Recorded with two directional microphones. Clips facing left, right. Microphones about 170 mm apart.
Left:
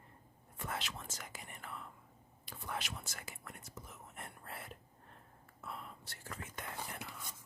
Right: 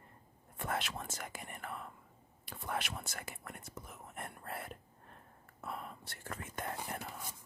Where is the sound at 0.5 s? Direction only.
55° right (ahead or behind).